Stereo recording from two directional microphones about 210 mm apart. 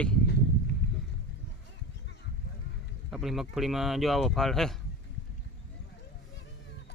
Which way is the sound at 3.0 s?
Centre (ahead or behind).